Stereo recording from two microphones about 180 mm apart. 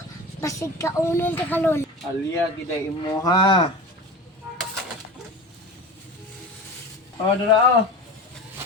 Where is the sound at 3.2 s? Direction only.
20° left (ahead or behind).